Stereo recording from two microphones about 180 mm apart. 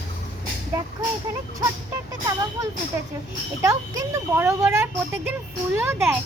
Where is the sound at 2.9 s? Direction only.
15° right (ahead or behind).